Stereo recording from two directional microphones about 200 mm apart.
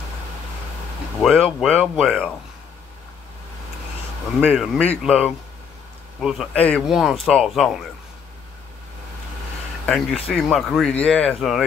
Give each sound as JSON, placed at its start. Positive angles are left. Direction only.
{"t": 1.2, "sound": "speech", "side_deg": 0}
{"t": 4.4, "sound": "speech", "side_deg": -10}
{"t": 6.2, "sound": "speech", "side_deg": 0}
{"t": 9.8, "sound": "speech", "side_deg": 5}